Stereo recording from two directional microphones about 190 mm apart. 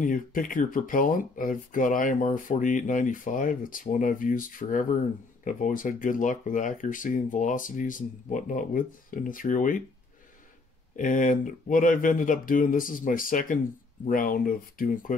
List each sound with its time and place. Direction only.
0.0 s speech: 45° left (ahead or behind)
11.0 s speech: 45° left (ahead or behind)